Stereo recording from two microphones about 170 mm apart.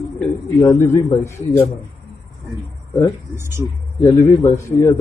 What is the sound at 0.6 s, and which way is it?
Speech, 15° left (ahead or behind).